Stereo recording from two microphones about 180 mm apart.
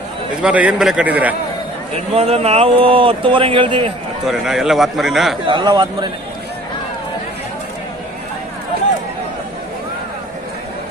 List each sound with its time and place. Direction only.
0.4 s a man's voice: 5° right (ahead or behind)
2.1 s a man's voice: 35° right (ahead or behind)
4.3 s a man's voice: centre (ahead or behind)
5.5 s a man's voice: 25° right (ahead or behind)